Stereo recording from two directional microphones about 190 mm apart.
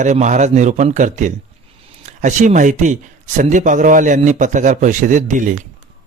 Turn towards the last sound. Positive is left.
turn(degrees=-40)  # may be behind; listen again after turning